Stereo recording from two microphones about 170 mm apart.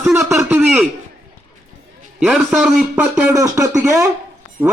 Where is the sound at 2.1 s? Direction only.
Centre (ahead or behind).